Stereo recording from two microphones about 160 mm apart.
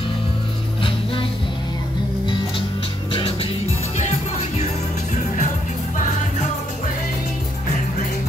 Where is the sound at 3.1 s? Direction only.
35° left (ahead or behind).